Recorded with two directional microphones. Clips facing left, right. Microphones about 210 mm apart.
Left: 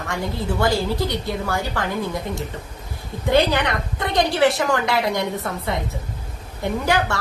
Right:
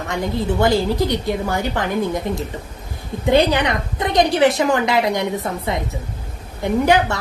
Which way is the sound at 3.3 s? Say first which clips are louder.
Right 3 dB; 20° right (ahead or behind).